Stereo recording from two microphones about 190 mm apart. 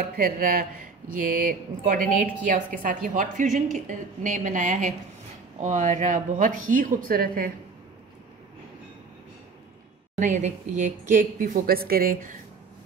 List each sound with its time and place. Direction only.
0.1 s a woman's voice: 45° right (ahead or behind)
10.1 s a woman's voice: 40° right (ahead or behind)